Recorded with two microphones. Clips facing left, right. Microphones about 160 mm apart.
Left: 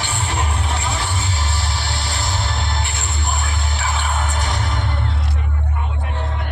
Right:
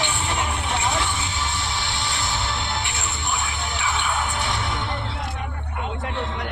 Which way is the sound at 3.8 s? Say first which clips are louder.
Left 1 dB; 40° left (ahead or behind).